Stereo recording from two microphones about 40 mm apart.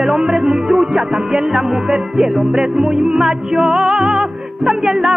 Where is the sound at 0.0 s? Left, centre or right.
Centre.